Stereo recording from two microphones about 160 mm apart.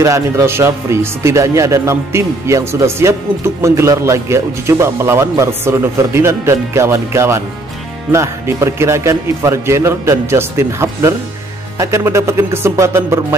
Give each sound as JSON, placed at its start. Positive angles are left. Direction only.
{"t": 0.0, "sound": "speech", "side_deg": -20}